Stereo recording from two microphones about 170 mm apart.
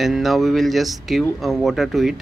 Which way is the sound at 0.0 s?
Centre (ahead or behind).